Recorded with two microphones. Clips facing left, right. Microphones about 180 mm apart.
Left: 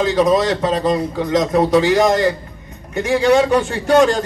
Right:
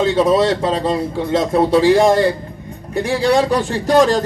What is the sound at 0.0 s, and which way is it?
A man's voice, 30° right (ahead or behind).